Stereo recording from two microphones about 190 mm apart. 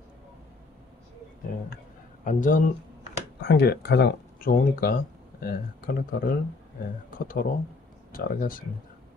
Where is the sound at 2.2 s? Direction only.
45° left (ahead or behind).